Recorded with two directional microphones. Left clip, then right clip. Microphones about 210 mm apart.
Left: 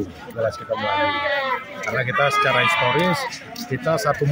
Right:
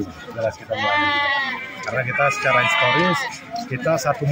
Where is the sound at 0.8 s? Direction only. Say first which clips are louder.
Right 3 dB; 50° right (ahead or behind).